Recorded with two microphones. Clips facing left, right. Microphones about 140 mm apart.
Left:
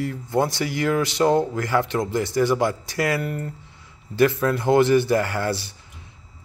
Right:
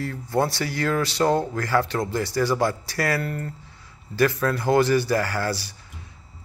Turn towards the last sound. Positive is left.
turn(degrees=25)  # may be behind; listen again after turning